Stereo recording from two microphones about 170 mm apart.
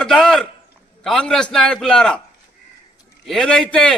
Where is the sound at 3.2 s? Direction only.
5° left (ahead or behind).